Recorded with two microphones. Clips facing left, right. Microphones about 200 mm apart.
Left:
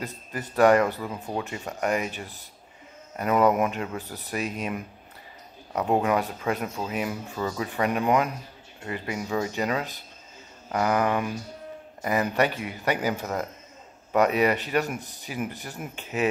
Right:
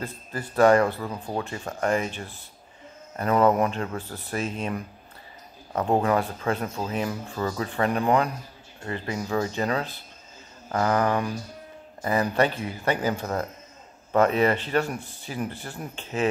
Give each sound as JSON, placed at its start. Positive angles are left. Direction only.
{"t": 0.0, "sound": "speech", "side_deg": 15}